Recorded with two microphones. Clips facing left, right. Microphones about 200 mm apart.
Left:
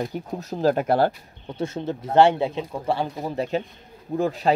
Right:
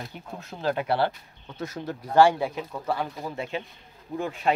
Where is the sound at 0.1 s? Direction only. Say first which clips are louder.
Left 9 dB; 40° left (ahead or behind).